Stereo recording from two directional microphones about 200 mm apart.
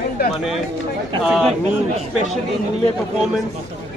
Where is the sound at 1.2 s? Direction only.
Centre (ahead or behind).